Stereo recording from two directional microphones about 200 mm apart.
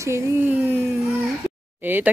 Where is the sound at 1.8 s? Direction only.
10° right (ahead or behind).